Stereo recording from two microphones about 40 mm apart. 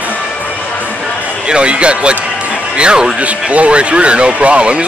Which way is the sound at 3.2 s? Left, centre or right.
Right.